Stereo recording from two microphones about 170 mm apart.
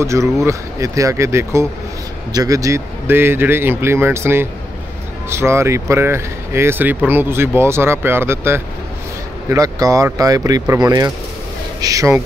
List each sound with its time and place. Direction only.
0.0 s speech: 15° right (ahead or behind)